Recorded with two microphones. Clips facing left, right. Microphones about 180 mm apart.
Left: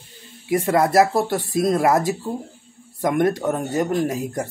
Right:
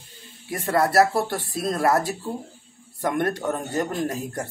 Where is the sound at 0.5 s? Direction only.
15° left (ahead or behind).